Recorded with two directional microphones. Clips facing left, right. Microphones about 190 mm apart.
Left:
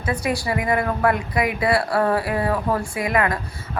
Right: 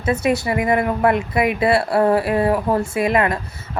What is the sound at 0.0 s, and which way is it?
A woman's voice, 25° right (ahead or behind).